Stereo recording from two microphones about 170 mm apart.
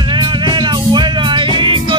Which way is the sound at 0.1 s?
25° right (ahead or behind).